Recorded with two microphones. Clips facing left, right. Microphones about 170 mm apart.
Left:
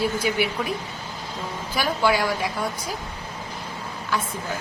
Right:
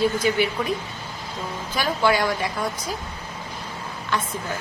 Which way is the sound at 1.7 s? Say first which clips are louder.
Right 1 dB; 10° left (ahead or behind).